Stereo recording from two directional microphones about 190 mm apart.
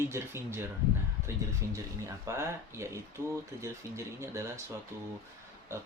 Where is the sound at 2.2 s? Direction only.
15° right (ahead or behind).